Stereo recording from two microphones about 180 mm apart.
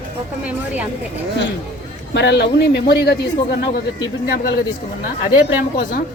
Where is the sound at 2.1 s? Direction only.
70° left (ahead or behind).